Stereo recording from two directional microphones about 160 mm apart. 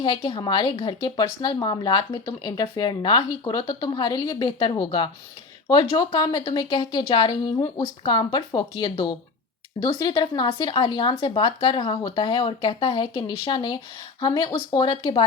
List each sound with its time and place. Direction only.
0.0 s speech: 30° left (ahead or behind)